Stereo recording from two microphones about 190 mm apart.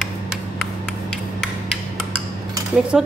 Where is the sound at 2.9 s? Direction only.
5° right (ahead or behind).